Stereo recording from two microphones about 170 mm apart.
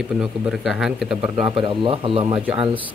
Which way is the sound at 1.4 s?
30° right (ahead or behind).